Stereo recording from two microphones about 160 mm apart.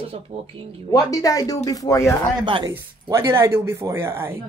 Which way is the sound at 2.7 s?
20° right (ahead or behind).